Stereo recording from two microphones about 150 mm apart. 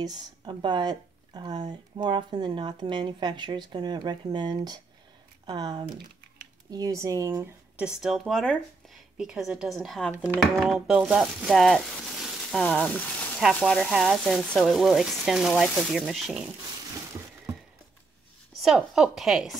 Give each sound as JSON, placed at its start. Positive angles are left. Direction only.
{"t": 0.0, "sound": "speech", "side_deg": -30}
{"t": 7.7, "sound": "speech", "side_deg": -5}
{"t": 10.1, "sound": "speech", "side_deg": -10}
{"t": 10.4, "sound": "speech", "side_deg": 0}
{"t": 18.6, "sound": "speech", "side_deg": 0}